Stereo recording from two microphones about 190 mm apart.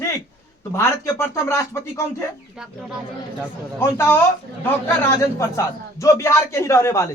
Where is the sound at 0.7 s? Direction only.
15° left (ahead or behind).